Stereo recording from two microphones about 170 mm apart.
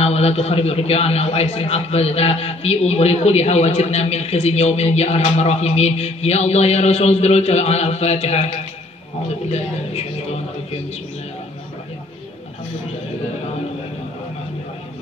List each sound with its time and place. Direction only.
0.0 s a man's voice: 40° left (ahead or behind)
9.5 s a man's voice: 40° left (ahead or behind)